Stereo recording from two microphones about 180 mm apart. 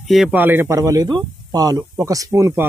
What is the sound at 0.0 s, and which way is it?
Speech, centre (ahead or behind).